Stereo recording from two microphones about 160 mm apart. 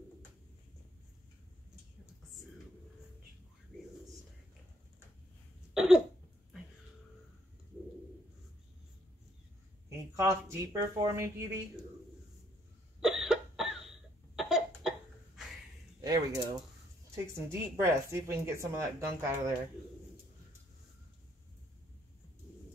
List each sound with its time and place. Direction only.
5.8 s cough: 5° right (ahead or behind)
9.8 s a sound: 15° right (ahead or behind)
11.0 s speech: 20° right (ahead or behind)
13.0 s cough: centre (ahead or behind)
16.0 s mechanisms: 25° right (ahead or behind)
17.1 s speech: 15° right (ahead or behind)